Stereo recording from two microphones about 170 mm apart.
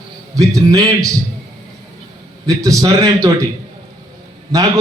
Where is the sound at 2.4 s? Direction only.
20° right (ahead or behind).